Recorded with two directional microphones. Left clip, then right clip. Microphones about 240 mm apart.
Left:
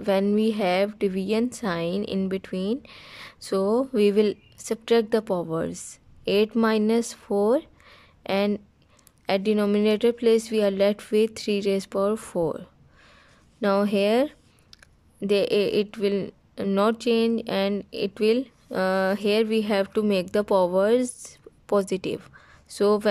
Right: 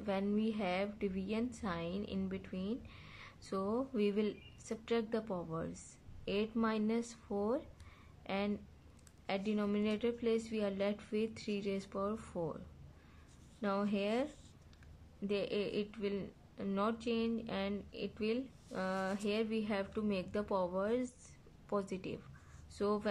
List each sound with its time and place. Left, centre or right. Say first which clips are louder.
0.0 s speech: left 15 dB; left